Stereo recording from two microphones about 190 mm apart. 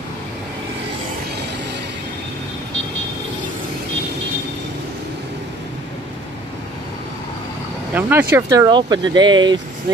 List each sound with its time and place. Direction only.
7.9 s speech: 10° right (ahead or behind)